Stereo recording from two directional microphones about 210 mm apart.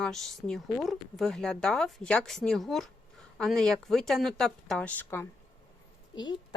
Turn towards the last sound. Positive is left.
turn(degrees=20)  # may be behind; listen again after turning